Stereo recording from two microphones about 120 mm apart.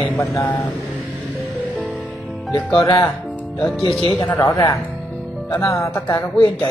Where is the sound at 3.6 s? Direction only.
10° left (ahead or behind).